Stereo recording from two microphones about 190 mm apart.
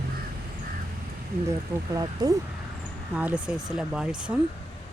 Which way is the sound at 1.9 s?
20° right (ahead or behind).